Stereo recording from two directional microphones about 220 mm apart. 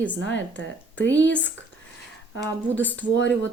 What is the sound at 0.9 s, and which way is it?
Speech, 5° left (ahead or behind).